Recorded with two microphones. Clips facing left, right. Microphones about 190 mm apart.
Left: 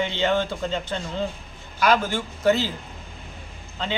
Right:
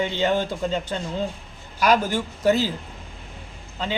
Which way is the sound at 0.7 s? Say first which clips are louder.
Right 1 dB; 10° right (ahead or behind).